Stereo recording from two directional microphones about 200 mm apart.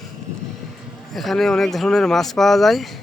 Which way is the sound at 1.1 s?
Centre (ahead or behind).